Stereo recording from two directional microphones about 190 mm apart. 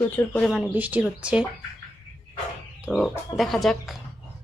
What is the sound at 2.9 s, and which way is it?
Speech, centre (ahead or behind).